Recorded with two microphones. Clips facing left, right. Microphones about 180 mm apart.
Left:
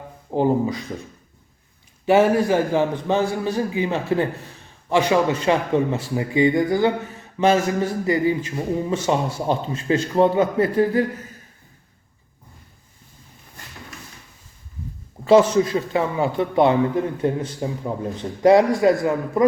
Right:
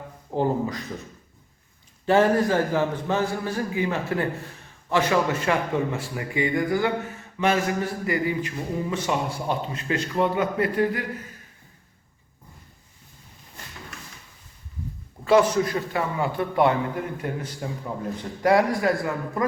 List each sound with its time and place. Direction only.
0.3 s speech: 15° left (ahead or behind)
2.0 s a man's voice: 10° left (ahead or behind); by 11.0 s 30° left (ahead or behind)
15.3 s a man's voice: 25° left (ahead or behind)